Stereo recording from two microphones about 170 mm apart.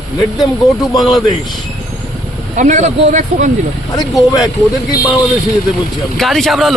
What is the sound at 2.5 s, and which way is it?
Speech, 45° right (ahead or behind).